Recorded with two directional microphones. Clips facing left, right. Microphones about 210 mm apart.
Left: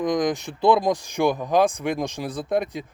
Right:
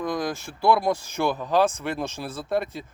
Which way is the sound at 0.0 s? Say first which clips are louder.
Left 5 dB; 20° left (ahead or behind).